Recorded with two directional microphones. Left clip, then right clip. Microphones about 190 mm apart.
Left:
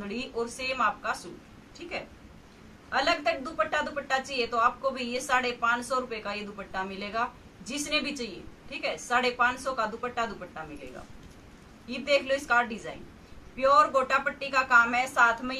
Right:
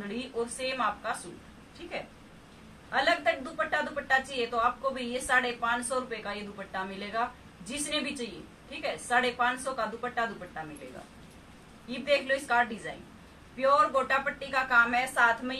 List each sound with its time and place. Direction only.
0.1 s a woman's voice: centre (ahead or behind)
2.9 s a woman's voice: centre (ahead or behind)
11.9 s a woman's voice: centre (ahead or behind)